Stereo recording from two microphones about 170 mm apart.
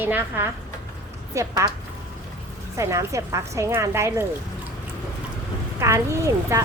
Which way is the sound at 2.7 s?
20° right (ahead or behind).